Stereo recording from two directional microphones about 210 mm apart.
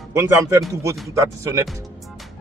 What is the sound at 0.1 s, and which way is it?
Speech, 10° right (ahead or behind).